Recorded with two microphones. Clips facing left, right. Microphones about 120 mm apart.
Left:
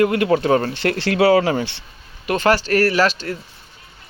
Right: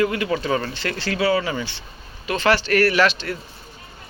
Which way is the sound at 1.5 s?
65° left (ahead or behind).